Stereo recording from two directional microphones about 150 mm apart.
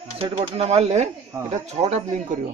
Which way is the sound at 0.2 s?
45° right (ahead or behind).